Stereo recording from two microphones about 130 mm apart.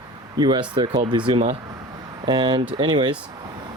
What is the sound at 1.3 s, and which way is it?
Speech, 45° right (ahead or behind).